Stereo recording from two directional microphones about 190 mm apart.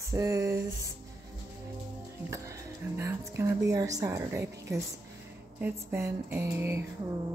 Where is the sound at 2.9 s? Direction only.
15° right (ahead or behind).